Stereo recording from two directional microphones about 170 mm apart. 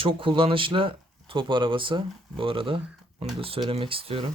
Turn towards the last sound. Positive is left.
turn(degrees=-35)  # may be behind; listen again after turning